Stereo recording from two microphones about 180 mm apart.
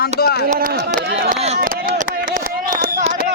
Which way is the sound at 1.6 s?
50° right (ahead or behind).